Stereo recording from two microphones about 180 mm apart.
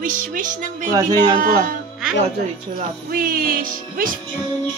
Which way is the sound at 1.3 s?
50° right (ahead or behind).